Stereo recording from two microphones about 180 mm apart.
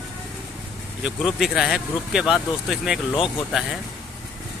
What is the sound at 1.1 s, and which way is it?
Speech, centre (ahead or behind).